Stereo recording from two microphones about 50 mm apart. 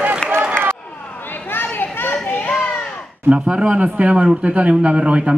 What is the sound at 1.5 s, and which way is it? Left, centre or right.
Children playing, left.